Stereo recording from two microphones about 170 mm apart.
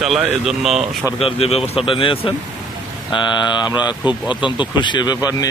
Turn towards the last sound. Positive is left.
turn(degrees=20)  # may be behind; listen again after turning